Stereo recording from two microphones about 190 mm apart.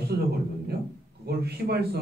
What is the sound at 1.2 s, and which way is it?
Speech, 55° right (ahead or behind).